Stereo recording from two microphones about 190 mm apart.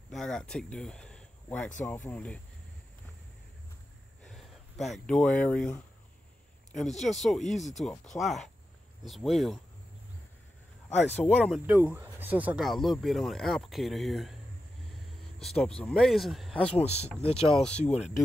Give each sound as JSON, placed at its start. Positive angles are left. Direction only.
{"t": 0.1, "sound": "speech", "side_deg": 5}
{"t": 4.2, "sound": "a sound", "side_deg": 0}
{"t": 7.0, "sound": "speech", "side_deg": 0}
{"t": 11.2, "sound": "speech", "side_deg": 5}
{"t": 11.6, "sound": "speech", "side_deg": -10}
{"t": 14.9, "sound": "a sound", "side_deg": 0}
{"t": 15.8, "sound": "speech", "side_deg": 5}
{"t": 16.7, "sound": "speech", "side_deg": 35}
{"t": 17.5, "sound": "speech", "side_deg": 5}